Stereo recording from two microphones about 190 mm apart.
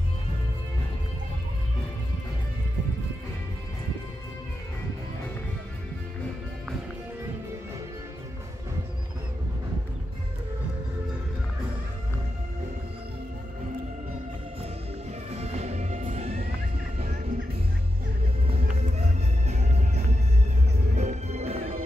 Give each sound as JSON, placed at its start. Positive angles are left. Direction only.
{"t": 15.3, "sound": "music", "side_deg": -35}
{"t": 18.5, "sound": "music", "side_deg": -35}